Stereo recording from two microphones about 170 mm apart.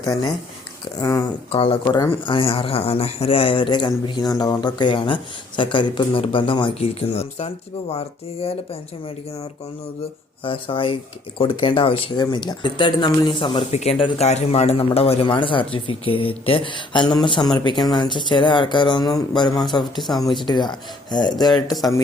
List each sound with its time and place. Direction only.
0.0 s speech: 20° left (ahead or behind)
1.5 s speech: 30° left (ahead or behind)
20.0 s speech: centre (ahead or behind)
20.3 s speech: 25° left (ahead or behind)